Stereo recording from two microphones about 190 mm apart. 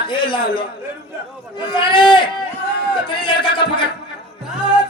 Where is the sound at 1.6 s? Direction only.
25° left (ahead or behind).